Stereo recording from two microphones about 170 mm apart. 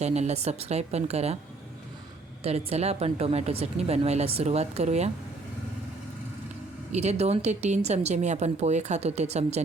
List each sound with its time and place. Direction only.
0.0 s speech: 40° right (ahead or behind)
2.4 s speech: 35° right (ahead or behind)
6.9 s speech: 40° right (ahead or behind)